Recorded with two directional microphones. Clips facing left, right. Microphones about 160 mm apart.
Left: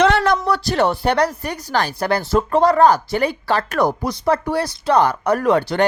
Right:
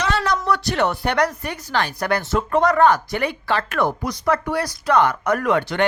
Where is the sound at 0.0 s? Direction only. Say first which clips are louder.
Left 7 dB; 55° left (ahead or behind).